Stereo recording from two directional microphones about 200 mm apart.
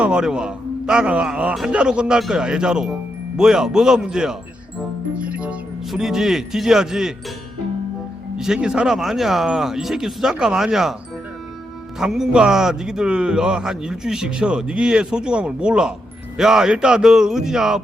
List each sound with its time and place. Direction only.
0.0 s a man's voice: 5° right (ahead or behind)
8.4 s a man's voice: 5° right (ahead or behind)
11.9 s a man's voice: centre (ahead or behind)